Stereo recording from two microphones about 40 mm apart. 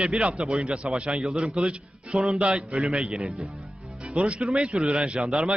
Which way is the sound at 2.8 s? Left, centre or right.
Centre.